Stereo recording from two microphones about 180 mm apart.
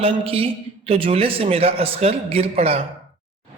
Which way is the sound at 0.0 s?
30° right (ahead or behind).